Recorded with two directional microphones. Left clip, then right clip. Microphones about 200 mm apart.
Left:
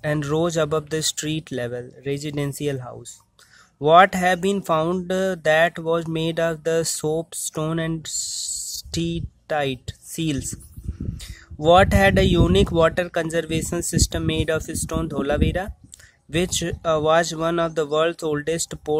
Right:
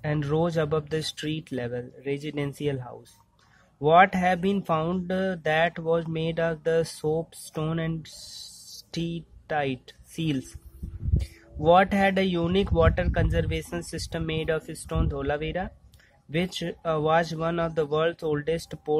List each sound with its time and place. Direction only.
0.0 s speech: 25° left (ahead or behind)